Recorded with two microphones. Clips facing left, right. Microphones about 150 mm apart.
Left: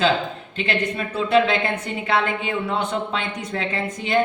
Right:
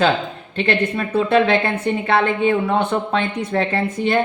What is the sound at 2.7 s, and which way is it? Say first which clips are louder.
Speech: right 5 dB; 55° right (ahead or behind).